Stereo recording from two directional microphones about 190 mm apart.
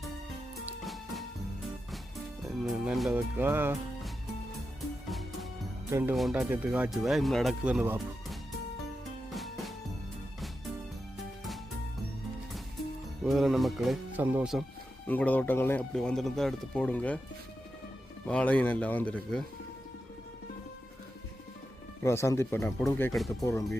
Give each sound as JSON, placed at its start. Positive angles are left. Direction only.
{"t": 0.6, "sound": "music", "side_deg": 0}
{"t": 3.2, "sound": "speech", "side_deg": -10}
{"t": 5.9, "sound": "speech", "side_deg": -10}
{"t": 6.1, "sound": "speech", "side_deg": 0}
{"t": 9.3, "sound": "music", "side_deg": 0}
{"t": 13.2, "sound": "speech", "side_deg": 0}
{"t": 15.0, "sound": "speech", "side_deg": 10}
{"t": 18.3, "sound": "speech", "side_deg": 5}
{"t": 22.0, "sound": "speech", "side_deg": 15}